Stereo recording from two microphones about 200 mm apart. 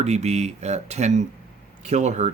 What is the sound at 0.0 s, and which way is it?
Speech, 35° right (ahead or behind).